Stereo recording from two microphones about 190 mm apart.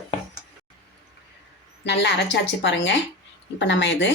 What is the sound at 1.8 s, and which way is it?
Speech, 65° left (ahead or behind).